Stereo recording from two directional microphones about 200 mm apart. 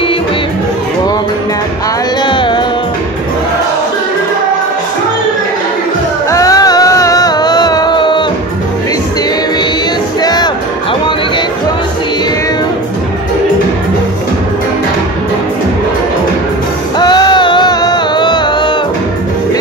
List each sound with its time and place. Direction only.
2.2 s music: 25° left (ahead or behind)
6.3 s music: 20° left (ahead or behind)
10.2 s music: 20° left (ahead or behind)
17.0 s music: 20° left (ahead or behind)